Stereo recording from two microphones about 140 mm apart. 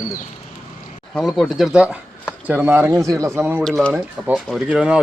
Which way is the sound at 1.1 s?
Centre (ahead or behind).